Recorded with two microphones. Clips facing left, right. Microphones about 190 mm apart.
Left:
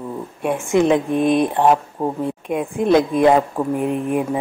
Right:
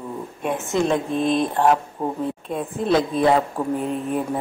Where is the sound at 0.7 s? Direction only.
20° left (ahead or behind).